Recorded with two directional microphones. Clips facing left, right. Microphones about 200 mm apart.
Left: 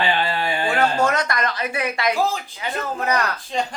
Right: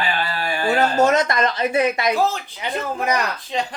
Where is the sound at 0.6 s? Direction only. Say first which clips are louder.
Right 4 dB; 20° right (ahead or behind).